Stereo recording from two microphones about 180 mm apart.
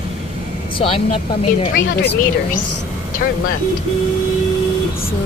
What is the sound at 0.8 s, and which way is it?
Speech, 30° left (ahead or behind).